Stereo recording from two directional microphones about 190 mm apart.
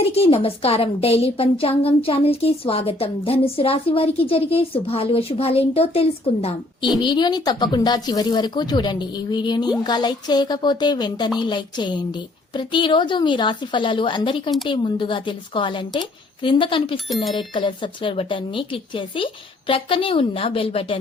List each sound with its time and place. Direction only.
0.0 s a woman's voice: 30° left (ahead or behind)